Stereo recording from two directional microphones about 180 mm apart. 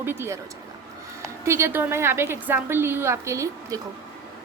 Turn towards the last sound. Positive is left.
turn(degrees=-15)  # may be behind; listen again after turning